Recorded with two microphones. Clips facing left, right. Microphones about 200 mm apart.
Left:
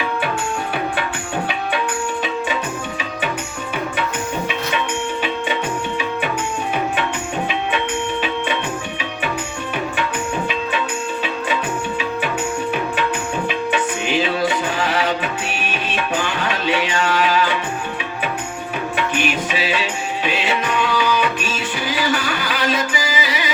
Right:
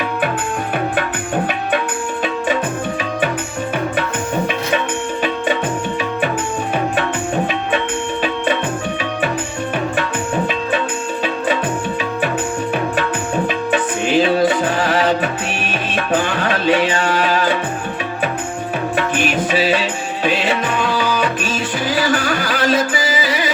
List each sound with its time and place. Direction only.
13.7 s music: 45° right (ahead or behind)
18.9 s music: 45° right (ahead or behind)